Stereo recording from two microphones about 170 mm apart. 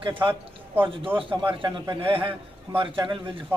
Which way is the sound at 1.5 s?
25° right (ahead or behind).